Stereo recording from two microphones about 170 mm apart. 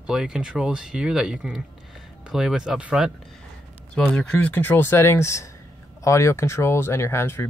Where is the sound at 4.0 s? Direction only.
5° left (ahead or behind).